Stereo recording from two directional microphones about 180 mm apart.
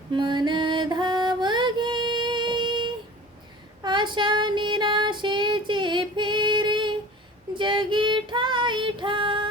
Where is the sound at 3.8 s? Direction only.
25° right (ahead or behind).